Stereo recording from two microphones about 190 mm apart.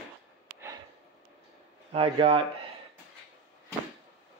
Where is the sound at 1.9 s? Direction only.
30° right (ahead or behind).